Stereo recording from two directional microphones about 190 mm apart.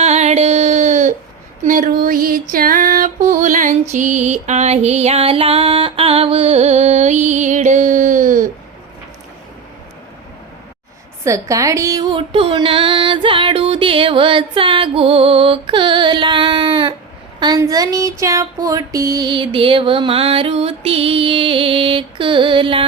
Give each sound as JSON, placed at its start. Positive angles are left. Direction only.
{"t": 0.0, "sound": "a sound", "side_deg": -35}
{"t": 1.6, "sound": "female singing", "side_deg": -45}
{"t": 3.9, "sound": "music", "side_deg": -40}
{"t": 11.2, "sound": "speech", "side_deg": -15}